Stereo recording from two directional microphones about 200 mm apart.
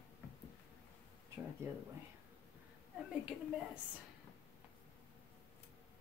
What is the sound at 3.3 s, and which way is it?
Speech, 5° right (ahead or behind).